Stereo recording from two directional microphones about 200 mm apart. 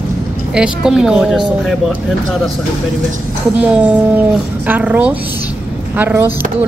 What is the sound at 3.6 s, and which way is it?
A woman's voice, 5° right (ahead or behind).